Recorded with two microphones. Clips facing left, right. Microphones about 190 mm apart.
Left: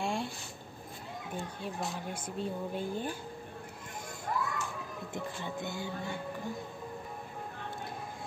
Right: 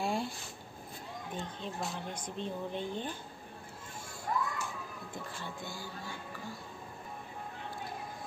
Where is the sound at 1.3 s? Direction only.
10° left (ahead or behind).